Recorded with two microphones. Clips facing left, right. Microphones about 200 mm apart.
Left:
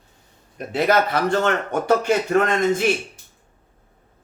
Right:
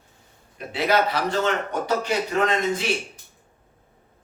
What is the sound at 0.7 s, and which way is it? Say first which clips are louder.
Speech: left 3 dB; 50° left (ahead or behind).